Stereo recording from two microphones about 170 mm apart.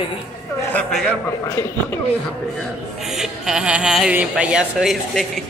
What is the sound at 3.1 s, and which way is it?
A woman's voice, centre (ahead or behind).